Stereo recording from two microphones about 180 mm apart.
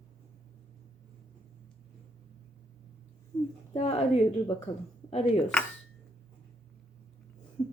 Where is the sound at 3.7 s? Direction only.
35° left (ahead or behind).